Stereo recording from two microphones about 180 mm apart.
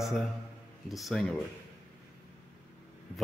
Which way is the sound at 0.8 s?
Centre (ahead or behind).